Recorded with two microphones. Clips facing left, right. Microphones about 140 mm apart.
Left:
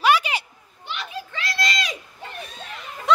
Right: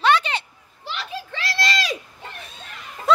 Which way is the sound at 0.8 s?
35° right (ahead or behind).